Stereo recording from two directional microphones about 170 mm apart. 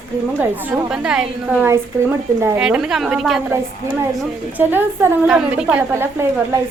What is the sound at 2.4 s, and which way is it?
Speech, 15° right (ahead or behind).